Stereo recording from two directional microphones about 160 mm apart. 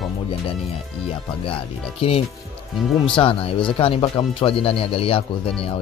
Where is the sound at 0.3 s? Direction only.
35° left (ahead or behind).